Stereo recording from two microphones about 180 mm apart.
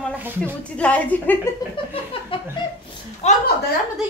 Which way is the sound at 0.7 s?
5° left (ahead or behind).